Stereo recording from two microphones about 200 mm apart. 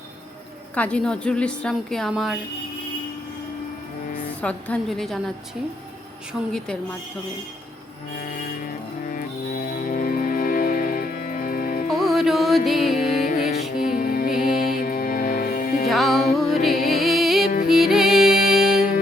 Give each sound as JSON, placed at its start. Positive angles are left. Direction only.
{"t": 0.8, "sound": "a woman's voice", "side_deg": 5}
{"t": 4.4, "sound": "a woman's voice", "side_deg": 5}
{"t": 9.6, "sound": "music", "side_deg": 45}
{"t": 11.9, "sound": "music", "side_deg": 0}
{"t": 13.9, "sound": "music", "side_deg": 45}
{"t": 15.9, "sound": "music", "side_deg": 0}